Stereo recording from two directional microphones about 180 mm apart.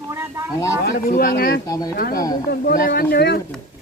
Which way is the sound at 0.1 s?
15° right (ahead or behind).